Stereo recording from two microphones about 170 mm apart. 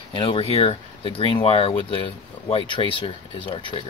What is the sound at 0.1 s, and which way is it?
Speech, 30° left (ahead or behind).